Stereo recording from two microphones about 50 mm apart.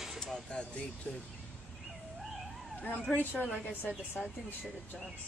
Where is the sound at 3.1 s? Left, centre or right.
Left.